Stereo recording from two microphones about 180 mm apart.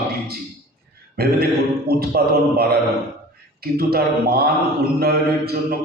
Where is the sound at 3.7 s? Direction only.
60° right (ahead or behind).